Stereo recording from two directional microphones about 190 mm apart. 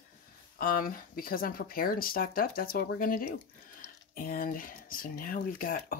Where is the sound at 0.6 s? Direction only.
50° left (ahead or behind).